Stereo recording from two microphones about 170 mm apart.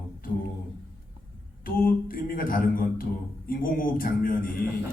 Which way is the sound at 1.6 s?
55° left (ahead or behind).